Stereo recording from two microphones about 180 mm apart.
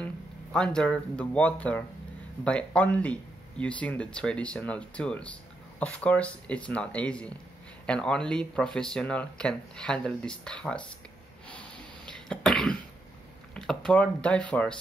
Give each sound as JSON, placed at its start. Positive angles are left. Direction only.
{"t": 0.0, "sound": "speech", "side_deg": 5}
{"t": 11.4, "sound": "cough", "side_deg": 5}
{"t": 13.6, "sound": "speech", "side_deg": 0}